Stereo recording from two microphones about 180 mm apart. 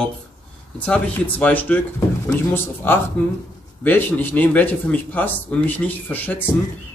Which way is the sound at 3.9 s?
10° left (ahead or behind).